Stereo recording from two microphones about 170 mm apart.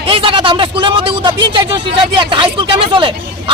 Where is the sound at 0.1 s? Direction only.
30° right (ahead or behind).